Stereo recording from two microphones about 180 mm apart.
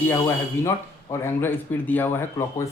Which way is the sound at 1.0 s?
15° left (ahead or behind).